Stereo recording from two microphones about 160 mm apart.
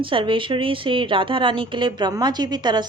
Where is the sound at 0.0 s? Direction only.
35° right (ahead or behind).